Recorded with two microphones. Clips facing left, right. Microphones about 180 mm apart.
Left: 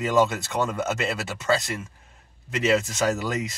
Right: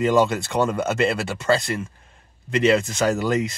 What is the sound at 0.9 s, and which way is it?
Speech, 60° right (ahead or behind).